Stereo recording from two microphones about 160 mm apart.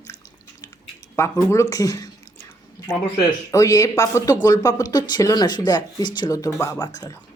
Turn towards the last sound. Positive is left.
turn(degrees=20)  # may be behind; listen again after turning